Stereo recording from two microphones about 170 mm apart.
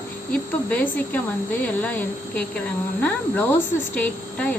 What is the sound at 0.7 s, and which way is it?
A woman's voice, 10° left (ahead or behind).